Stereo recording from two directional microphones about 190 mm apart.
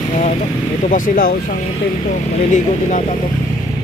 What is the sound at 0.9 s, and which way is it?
Speech, 45° left (ahead or behind).